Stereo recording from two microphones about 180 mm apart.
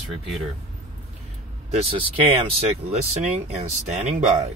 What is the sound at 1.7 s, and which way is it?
Speech, 30° right (ahead or behind).